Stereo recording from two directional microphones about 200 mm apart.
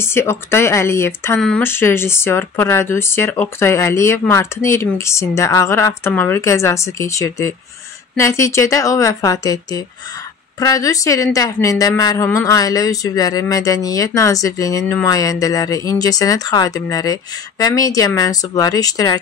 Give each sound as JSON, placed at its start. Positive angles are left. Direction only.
{"t": 0.0, "sound": "a woman's voice", "side_deg": 10}